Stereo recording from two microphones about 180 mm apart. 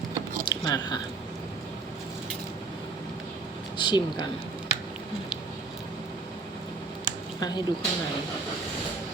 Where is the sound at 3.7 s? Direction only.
25° left (ahead or behind).